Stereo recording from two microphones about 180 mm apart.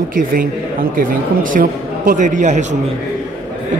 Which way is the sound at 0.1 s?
50° right (ahead or behind).